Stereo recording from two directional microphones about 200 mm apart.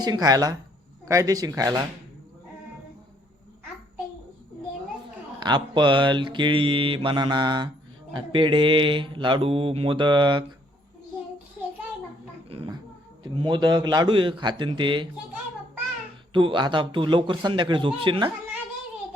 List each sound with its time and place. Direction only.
0.0 s mantra: 20° right (ahead or behind)
1.0 s speech: 15° right (ahead or behind)
5.4 s mantra: 20° right (ahead or behind)
13.2 s mantra: 25° right (ahead or behind)
16.3 s mantra: 25° right (ahead or behind)